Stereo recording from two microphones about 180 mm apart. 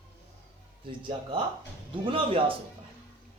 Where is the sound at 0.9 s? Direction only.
30° right (ahead or behind).